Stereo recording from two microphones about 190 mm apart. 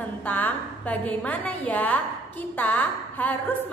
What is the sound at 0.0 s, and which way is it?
A woman's voice, 10° left (ahead or behind).